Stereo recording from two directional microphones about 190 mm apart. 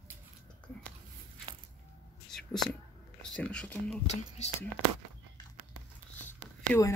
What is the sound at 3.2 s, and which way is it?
Speech, 5° left (ahead or behind).